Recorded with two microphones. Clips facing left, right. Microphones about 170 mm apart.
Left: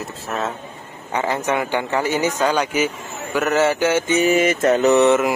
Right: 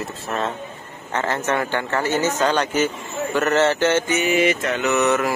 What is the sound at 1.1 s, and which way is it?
Mantra, 15° left (ahead or behind).